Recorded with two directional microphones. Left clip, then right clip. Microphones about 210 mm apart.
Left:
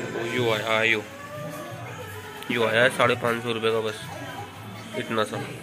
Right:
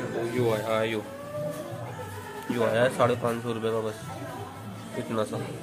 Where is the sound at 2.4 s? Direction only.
Centre (ahead or behind).